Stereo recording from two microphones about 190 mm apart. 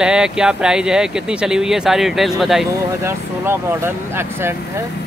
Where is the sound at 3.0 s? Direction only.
15° right (ahead or behind).